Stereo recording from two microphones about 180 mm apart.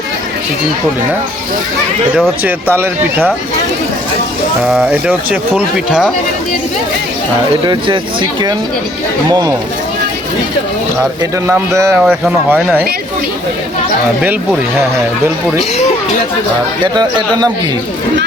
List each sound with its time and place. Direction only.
2.1 s speech: 5° right (ahead or behind)
4.7 s speech: 5° right (ahead or behind)
7.7 s speech: 25° right (ahead or behind)
11.4 s speech: 15° right (ahead or behind)
11.9 s speech: centre (ahead or behind)
16.8 s speech: 25° right (ahead or behind)